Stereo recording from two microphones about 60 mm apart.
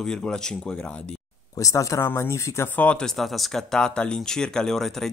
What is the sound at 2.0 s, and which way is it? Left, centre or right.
Speech, left.